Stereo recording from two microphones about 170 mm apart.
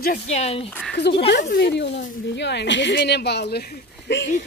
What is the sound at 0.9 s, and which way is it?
Speech, 90° left.